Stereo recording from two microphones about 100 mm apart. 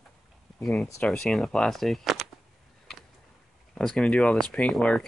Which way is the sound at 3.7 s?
5° left (ahead or behind).